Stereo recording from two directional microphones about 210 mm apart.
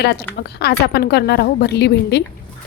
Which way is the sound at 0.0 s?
50° left (ahead or behind).